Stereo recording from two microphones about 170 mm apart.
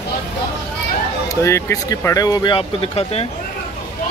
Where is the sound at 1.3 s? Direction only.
15° left (ahead or behind); by 3.3 s 35° left (ahead or behind).